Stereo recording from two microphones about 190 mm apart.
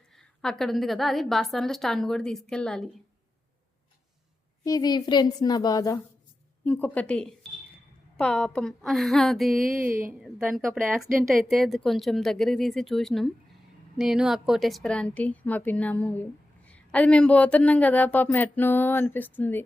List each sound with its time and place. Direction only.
0.2 s speech: 5° left (ahead or behind)
4.6 s a woman's voice: 20° left (ahead or behind)
6.7 s speech: 10° left (ahead or behind)
9.6 s speech: 45° right (ahead or behind)
10.1 s speech: 5° right (ahead or behind); by 19.6 s 10° left (ahead or behind)